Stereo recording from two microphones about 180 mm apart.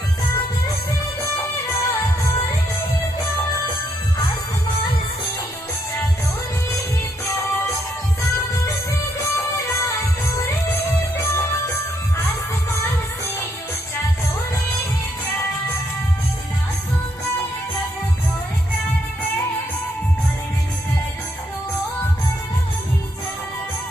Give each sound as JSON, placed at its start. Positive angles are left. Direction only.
{"t": 0.2, "sound": "music", "side_deg": 30}
{"t": 1.2, "sound": "music", "side_deg": 15}
{"t": 7.2, "sound": "music", "side_deg": 15}
{"t": 9.2, "sound": "music", "side_deg": 15}